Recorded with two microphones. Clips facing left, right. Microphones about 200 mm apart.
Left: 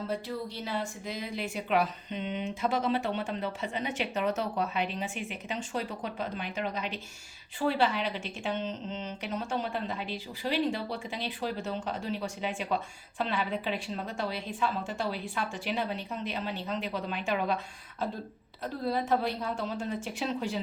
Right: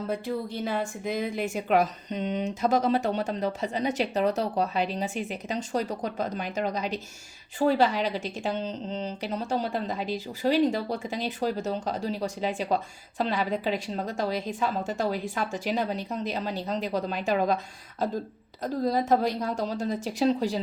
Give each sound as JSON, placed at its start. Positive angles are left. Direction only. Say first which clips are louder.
{"t": 0.1, "sound": "speech", "louder": "right 4 dB", "side_deg": -50}